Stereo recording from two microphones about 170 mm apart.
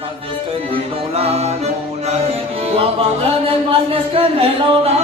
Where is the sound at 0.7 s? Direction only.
35° right (ahead or behind).